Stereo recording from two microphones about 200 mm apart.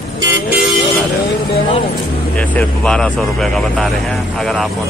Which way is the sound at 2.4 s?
5° left (ahead or behind).